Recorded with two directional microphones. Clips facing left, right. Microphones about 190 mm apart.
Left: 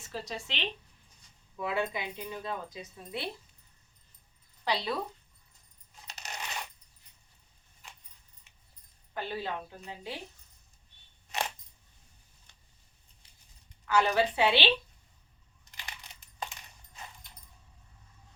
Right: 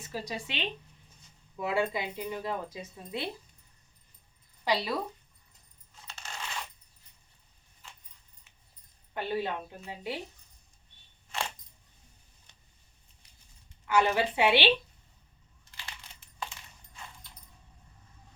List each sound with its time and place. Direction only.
0.1 s speech: 10° right (ahead or behind)
1.5 s speech: 25° right (ahead or behind)
4.6 s speech: 10° right (ahead or behind)
6.1 s coin: 20° left (ahead or behind)
9.1 s speech: 20° right (ahead or behind)
13.8 s speech: 20° right (ahead or behind)
15.7 s crushing: 15° left (ahead or behind)